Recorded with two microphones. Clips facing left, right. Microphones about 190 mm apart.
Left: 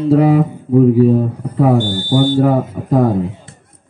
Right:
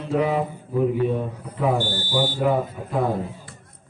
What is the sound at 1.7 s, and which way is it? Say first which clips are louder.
Speech: left 9 dB; 60° left (ahead or behind).